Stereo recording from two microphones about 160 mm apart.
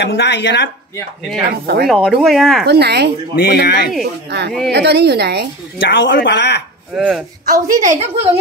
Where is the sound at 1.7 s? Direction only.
90° right.